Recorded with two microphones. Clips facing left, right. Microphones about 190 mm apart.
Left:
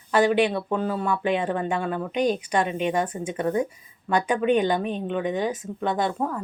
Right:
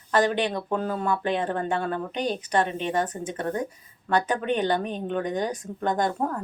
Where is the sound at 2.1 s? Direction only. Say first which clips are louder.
Left 3 dB; 35° right (ahead or behind).